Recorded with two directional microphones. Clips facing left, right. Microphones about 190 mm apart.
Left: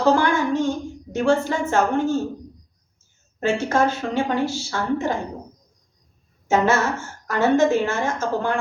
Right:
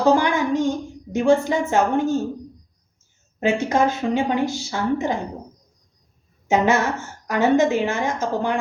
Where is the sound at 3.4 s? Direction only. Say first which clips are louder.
Right 1 dB; 15° right (ahead or behind).